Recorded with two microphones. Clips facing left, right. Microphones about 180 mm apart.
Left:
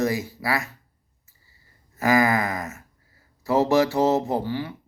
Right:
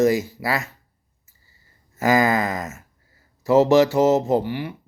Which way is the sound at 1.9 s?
25° right (ahead or behind).